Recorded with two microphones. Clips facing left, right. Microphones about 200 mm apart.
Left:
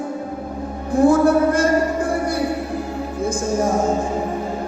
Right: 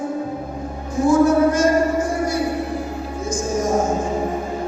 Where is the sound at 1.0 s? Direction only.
60° left (ahead or behind).